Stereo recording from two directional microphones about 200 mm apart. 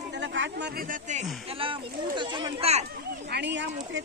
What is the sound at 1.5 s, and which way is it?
Speech, 25° right (ahead or behind).